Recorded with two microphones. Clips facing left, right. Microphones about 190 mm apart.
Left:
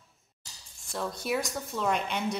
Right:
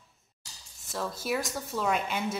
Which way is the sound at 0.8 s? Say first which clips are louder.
Even; centre (ahead or behind).